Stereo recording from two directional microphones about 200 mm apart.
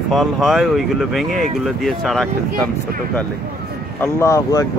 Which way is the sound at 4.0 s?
15° left (ahead or behind).